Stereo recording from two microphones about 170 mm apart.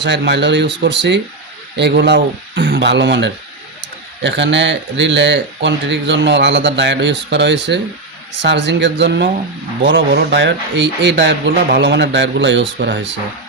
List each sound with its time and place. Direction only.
0.0 s speech: 90° right